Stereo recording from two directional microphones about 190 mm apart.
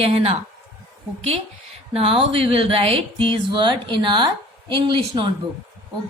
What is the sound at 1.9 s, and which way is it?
Speech, 30° right (ahead or behind).